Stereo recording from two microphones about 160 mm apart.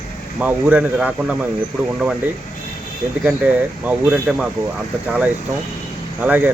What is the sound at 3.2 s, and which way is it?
Speech, 10° right (ahead or behind).